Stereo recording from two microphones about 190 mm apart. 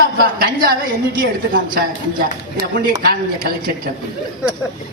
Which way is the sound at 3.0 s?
55° right (ahead or behind).